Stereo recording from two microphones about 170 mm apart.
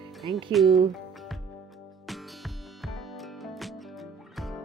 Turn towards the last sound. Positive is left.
turn(degrees=0)  # may be behind; listen again after turning